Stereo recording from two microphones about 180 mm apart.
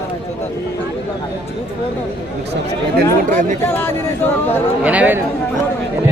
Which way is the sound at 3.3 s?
45° right (ahead or behind).